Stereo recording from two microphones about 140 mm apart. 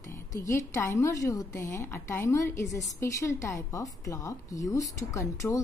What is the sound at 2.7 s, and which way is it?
Speech, centre (ahead or behind).